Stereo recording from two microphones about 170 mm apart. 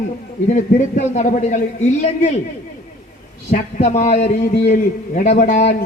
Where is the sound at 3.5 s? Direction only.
40° left (ahead or behind).